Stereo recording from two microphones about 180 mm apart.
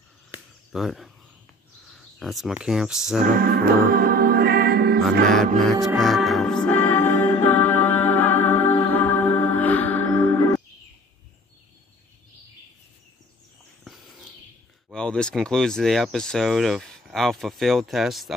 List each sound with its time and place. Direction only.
0.3 s a sound: centre (ahead or behind)
2.1 s speech: centre (ahead or behind)
3.3 s music: 60° right (ahead or behind)
5.6 s speech: centre (ahead or behind)
5.9 s music: centre (ahead or behind)
13.8 s a sound: centre (ahead or behind)
14.9 s speech: 5° left (ahead or behind)